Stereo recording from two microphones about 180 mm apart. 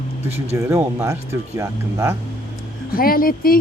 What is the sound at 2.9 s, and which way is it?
Speech, 55° left (ahead or behind).